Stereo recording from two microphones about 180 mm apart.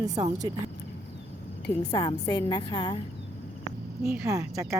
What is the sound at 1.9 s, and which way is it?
A woman's voice, 20° left (ahead or behind).